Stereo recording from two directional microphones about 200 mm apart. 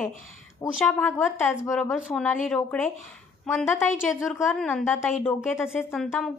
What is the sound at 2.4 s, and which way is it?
A woman's voice, 5° left (ahead or behind).